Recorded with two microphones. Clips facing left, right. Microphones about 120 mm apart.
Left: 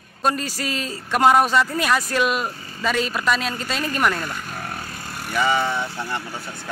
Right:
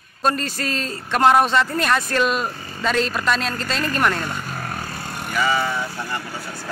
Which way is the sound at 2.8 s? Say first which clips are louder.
Right 1 dB; 5° left (ahead or behind).